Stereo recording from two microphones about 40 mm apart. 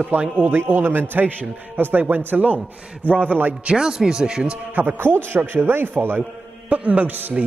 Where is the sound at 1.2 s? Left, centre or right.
Right.